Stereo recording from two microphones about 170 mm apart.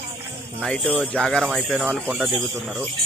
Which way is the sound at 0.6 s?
5° left (ahead or behind).